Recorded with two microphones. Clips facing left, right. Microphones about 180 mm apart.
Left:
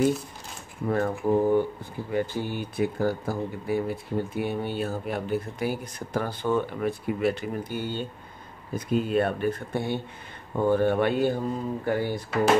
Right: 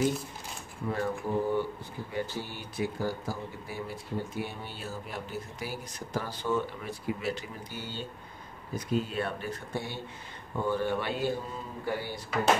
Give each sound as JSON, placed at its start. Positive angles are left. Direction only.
{"t": 0.8, "sound": "speech", "side_deg": 55}